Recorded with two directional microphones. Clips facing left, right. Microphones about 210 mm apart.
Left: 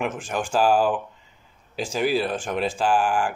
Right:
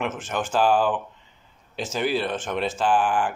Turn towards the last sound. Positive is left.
turn(degrees=10)  # may be behind; listen again after turning